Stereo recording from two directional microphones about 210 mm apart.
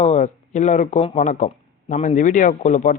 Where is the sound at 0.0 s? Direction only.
35° left (ahead or behind).